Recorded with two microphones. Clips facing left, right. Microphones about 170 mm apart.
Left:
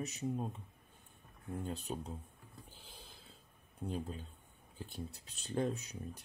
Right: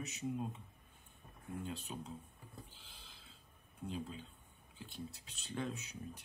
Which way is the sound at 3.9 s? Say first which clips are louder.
Left 3 dB; 45° left (ahead or behind).